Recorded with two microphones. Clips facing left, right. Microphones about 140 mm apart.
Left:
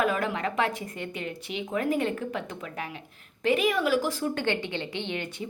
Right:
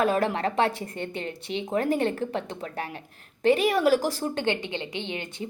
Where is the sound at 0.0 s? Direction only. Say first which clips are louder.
Right 3 dB; 35° right (ahead or behind).